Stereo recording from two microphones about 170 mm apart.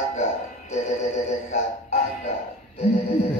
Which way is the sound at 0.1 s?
40° left (ahead or behind).